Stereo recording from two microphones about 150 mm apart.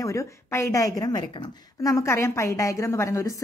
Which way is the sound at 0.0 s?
20° left (ahead or behind).